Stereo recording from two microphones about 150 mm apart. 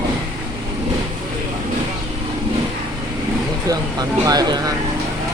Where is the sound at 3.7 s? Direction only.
25° right (ahead or behind).